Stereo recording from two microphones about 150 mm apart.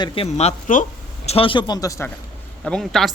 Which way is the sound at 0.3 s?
50° left (ahead or behind).